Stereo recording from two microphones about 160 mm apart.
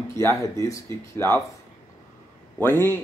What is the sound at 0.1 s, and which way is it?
Speech, 20° left (ahead or behind).